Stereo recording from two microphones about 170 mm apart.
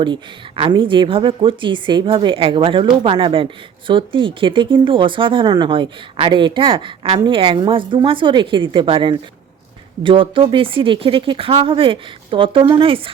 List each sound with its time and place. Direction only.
0.0 s speech: 30° right (ahead or behind)